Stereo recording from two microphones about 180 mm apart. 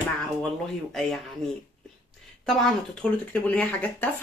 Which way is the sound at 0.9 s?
Centre (ahead or behind).